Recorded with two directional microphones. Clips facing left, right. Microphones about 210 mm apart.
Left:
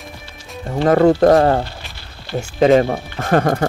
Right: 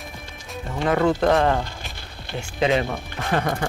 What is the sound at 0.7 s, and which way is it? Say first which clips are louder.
A man's voice: left 8 dB; 40° left (ahead or behind).